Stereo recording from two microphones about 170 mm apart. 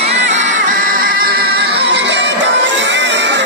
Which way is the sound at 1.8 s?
90° right.